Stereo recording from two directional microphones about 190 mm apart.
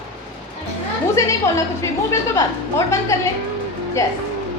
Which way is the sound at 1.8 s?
15° left (ahead or behind).